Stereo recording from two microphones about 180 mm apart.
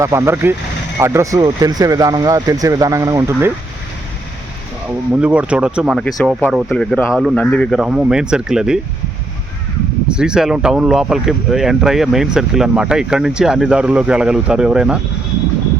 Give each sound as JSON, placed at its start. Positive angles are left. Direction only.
{"t": 0.0, "sound": "speech", "side_deg": -15}
{"t": 5.1, "sound": "speech", "side_deg": -5}
{"t": 10.1, "sound": "speech", "side_deg": -5}